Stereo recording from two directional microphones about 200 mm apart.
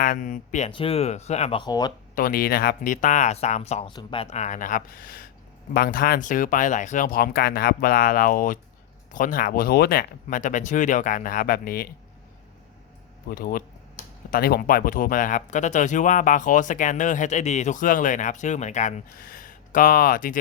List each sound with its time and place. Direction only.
0.0 s speech: 40° left (ahead or behind); by 1.9 s 20° left (ahead or behind)
2.1 s speech: 45° left (ahead or behind)
13.3 s speech: 45° left (ahead or behind)